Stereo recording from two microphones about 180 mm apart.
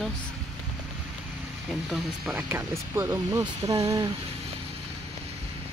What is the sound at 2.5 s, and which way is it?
Speech, 15° right (ahead or behind).